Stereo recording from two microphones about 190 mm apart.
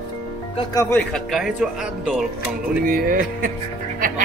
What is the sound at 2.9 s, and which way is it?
Speech, 50° right (ahead or behind).